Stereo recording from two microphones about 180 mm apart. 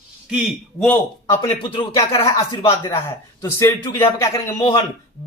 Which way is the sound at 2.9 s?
15° left (ahead or behind).